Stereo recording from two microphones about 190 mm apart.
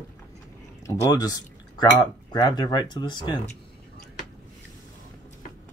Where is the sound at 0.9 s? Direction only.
20° left (ahead or behind).